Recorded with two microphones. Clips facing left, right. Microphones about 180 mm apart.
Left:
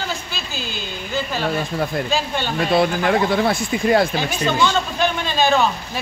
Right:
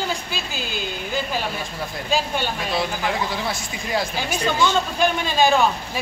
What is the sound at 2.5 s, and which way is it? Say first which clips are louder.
Speech: left 7 dB; 60° left (ahead or behind).